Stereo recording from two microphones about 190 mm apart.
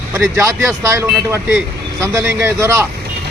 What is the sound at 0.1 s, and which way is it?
Speech, 15° right (ahead or behind).